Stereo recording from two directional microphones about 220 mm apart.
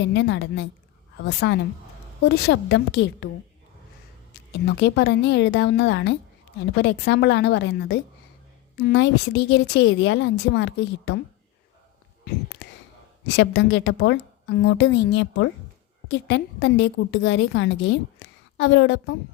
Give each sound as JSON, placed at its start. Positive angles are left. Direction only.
{"t": 0.0, "sound": "a woman's voice", "side_deg": 55}
{"t": 4.5, "sound": "a woman's voice", "side_deg": 50}
{"t": 13.3, "sound": "a woman's voice", "side_deg": 55}